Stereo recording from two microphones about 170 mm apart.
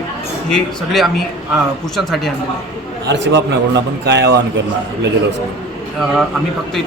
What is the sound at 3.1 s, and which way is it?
A man's voice, 90° right.